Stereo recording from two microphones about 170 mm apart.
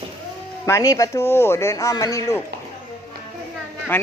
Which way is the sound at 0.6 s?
20° left (ahead or behind).